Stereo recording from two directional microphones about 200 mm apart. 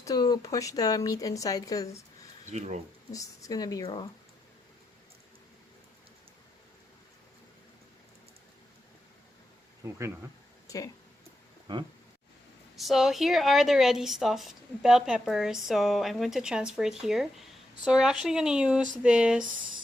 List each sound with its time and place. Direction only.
0.0 s speech: 20° left (ahead or behind)
2.5 s speech: 35° right (ahead or behind)
3.1 s speech: 15° left (ahead or behind)
9.8 s speech: 15° right (ahead or behind)
10.7 s speech: 15° left (ahead or behind)
12.7 s speech: centre (ahead or behind)